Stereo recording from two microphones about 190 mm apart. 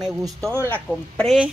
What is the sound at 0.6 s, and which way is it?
Speech, 5° left (ahead or behind).